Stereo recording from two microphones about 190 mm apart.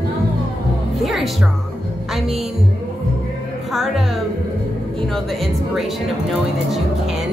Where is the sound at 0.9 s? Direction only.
Centre (ahead or behind).